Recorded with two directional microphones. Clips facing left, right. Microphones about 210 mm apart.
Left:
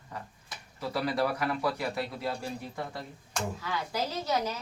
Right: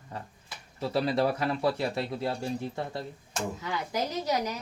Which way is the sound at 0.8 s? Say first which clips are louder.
Right 3 dB; 25° right (ahead or behind).